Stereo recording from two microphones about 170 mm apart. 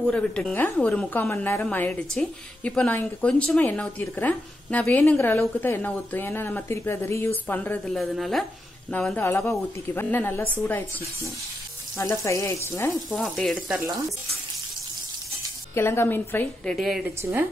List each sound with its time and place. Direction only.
0.0 s a woman's voice: 5° left (ahead or behind)
12.0 s a woman's voice: 15° left (ahead or behind)
13.1 s a woman's voice: centre (ahead or behind)
15.7 s a woman's voice: 15° left (ahead or behind)
16.7 s a woman's voice: centre (ahead or behind)
17.2 s a woman's voice: 15° right (ahead or behind)